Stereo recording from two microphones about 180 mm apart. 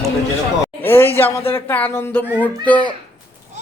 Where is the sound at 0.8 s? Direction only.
10° left (ahead or behind).